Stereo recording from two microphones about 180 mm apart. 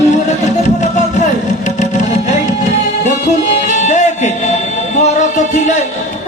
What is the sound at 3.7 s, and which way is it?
Music, 40° left (ahead or behind).